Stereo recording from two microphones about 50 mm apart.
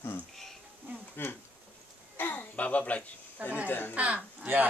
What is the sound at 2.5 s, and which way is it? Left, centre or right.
Speech, left.